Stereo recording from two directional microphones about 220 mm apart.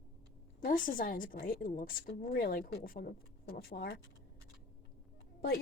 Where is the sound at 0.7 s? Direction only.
40° left (ahead or behind).